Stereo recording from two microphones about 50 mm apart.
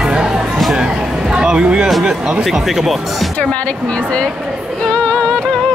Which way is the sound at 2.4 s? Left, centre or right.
Centre.